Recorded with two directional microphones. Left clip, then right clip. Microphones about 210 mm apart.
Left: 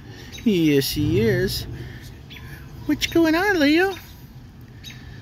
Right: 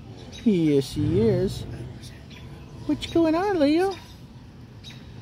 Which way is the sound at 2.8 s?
10° right (ahead or behind).